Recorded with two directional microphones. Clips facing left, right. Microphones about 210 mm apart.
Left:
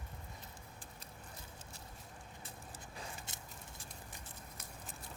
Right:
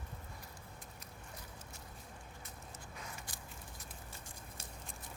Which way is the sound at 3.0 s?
25° left (ahead or behind).